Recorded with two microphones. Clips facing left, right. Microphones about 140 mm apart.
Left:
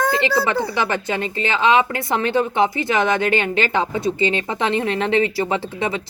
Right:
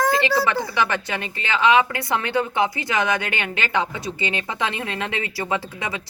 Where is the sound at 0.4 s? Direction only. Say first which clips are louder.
Left 2 dB; 35° left (ahead or behind).